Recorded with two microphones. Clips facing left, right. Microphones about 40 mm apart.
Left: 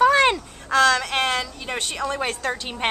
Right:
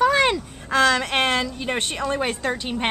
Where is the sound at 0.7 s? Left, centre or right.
Centre.